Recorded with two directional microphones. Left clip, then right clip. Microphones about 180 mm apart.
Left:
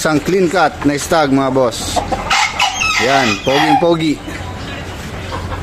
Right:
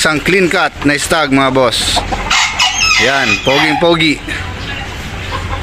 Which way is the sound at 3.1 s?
Centre (ahead or behind).